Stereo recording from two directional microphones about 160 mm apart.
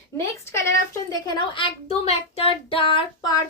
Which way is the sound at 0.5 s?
20° left (ahead or behind).